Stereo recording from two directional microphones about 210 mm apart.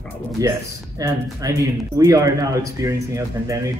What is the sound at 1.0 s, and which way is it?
Speech, 15° right (ahead or behind).